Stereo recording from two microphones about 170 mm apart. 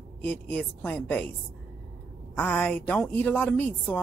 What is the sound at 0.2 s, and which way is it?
A woman's voice, 10° left (ahead or behind).